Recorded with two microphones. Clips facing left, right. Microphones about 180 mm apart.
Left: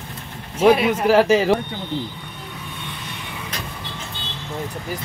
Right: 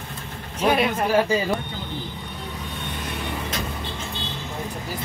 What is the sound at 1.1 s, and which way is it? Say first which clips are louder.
Speech: left 6 dB; 85° left.